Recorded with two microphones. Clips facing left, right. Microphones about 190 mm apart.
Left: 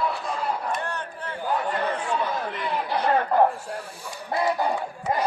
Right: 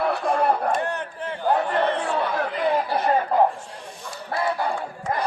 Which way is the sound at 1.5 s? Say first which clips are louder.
Right 5 dB; 65° right (ahead or behind).